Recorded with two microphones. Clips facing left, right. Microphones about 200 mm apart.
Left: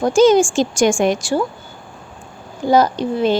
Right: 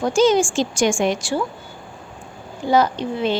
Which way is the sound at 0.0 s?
45° left (ahead or behind).